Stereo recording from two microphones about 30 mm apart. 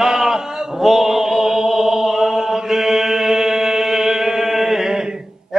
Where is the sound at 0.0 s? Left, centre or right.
Centre.